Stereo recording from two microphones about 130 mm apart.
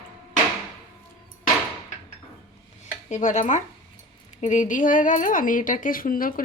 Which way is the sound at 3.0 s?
65° left (ahead or behind).